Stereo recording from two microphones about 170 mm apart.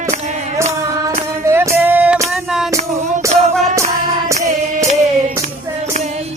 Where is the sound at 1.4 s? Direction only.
15° right (ahead or behind).